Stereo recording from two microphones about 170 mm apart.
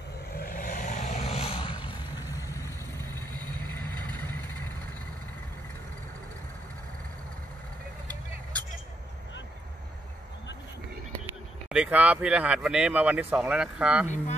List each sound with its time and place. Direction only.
0.4 s vehicle: 55° left (ahead or behind); by 1.8 s 30° left (ahead or behind)
2.3 s vehicle: 20° left (ahead or behind)
11.7 s speech: 5° right (ahead or behind)
14.0 s speech: 45° left (ahead or behind)